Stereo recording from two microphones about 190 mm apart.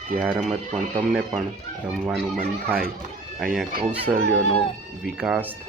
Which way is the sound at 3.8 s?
30° right (ahead or behind).